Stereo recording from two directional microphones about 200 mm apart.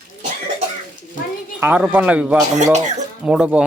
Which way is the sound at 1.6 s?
10° right (ahead or behind).